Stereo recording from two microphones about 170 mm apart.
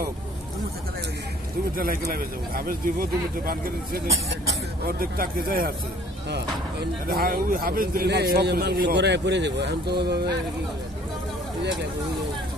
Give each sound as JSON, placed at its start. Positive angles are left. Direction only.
{"t": 1.8, "sound": "speech", "side_deg": -55}